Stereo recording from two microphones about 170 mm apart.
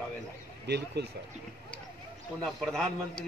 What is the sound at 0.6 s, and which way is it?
Speech, 80° right.